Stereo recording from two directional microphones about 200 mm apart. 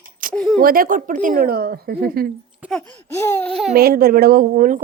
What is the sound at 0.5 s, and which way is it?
A woman's voice, 45° right (ahead or behind).